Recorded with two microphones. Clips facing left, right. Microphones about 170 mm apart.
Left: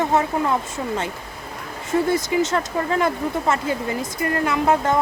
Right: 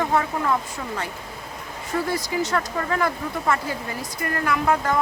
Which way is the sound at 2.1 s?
25° left (ahead or behind).